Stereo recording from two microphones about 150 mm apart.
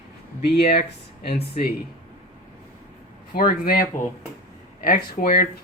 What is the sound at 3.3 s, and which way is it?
Speech, 75° left (ahead or behind).